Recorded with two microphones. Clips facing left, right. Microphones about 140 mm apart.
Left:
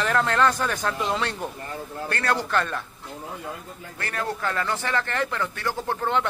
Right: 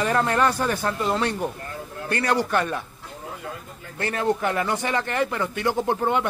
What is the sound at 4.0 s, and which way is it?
Speech, 20° right (ahead or behind).